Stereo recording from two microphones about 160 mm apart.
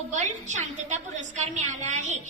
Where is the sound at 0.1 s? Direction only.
50° right (ahead or behind).